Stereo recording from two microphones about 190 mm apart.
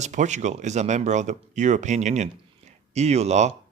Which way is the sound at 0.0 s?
40° right (ahead or behind).